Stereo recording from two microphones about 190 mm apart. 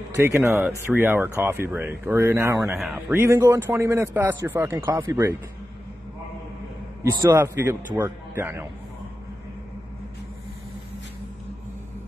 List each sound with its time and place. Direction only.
0.1 s a man's voice: 15° right (ahead or behind)
0.5 s a man's voice: 5° right (ahead or behind)
7.0 s a man's voice: 20° right (ahead or behind)